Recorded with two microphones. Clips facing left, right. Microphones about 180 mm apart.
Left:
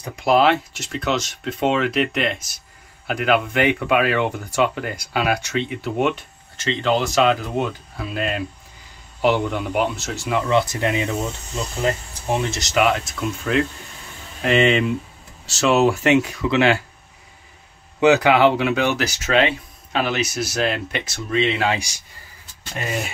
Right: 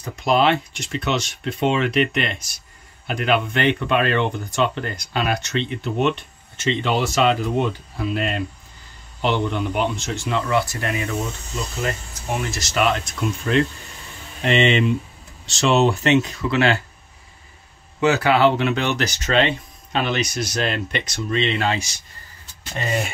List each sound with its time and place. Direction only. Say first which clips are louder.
0.1 s speech: left 2 dB; 5° left (ahead or behind)
6.6 s speech: left 1 dB; 5° right (ahead or behind)
10.5 s speech: left 5 dB; 20° left (ahead or behind)
18.0 s speech: left 2 dB; 15° left (ahead or behind)